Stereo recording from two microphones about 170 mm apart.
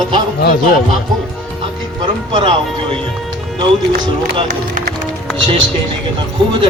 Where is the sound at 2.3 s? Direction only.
30° right (ahead or behind).